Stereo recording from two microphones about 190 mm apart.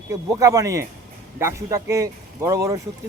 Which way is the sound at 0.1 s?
15° right (ahead or behind).